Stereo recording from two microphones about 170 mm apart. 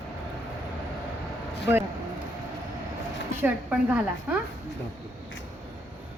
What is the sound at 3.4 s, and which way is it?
Speech, 10° right (ahead or behind).